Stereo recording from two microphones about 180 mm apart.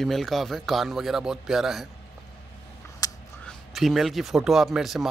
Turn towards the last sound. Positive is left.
turn(degrees=0)  # may be behind; listen again after turning